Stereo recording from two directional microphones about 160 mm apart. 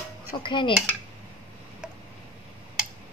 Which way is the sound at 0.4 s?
30° left (ahead or behind).